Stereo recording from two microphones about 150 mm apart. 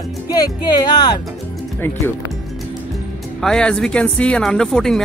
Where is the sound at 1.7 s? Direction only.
15° left (ahead or behind).